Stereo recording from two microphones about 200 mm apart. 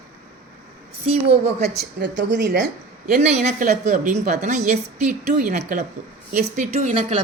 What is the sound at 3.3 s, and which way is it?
A woman's voice, 40° right (ahead or behind).